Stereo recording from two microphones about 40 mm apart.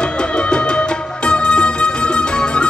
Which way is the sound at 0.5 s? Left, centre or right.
Left.